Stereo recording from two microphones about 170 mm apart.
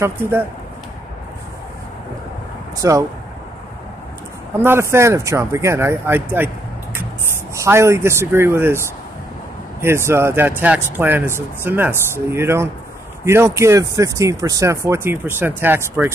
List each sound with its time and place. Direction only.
0.0 s speech: 15° right (ahead or behind)
2.8 s speech: 20° right (ahead or behind)
4.6 s speech: 15° right (ahead or behind)